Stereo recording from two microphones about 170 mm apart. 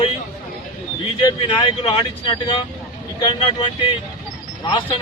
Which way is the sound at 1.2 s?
30° left (ahead or behind).